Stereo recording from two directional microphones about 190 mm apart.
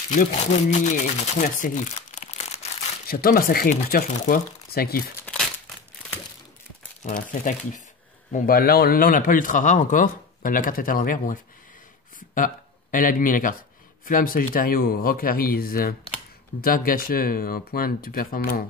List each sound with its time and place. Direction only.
0.1 s speech: 40° left (ahead or behind)
3.1 s a man's voice: 50° left (ahead or behind)
7.0 s a man's voice: 45° left (ahead or behind)
12.9 s a man's voice: 45° left (ahead or behind)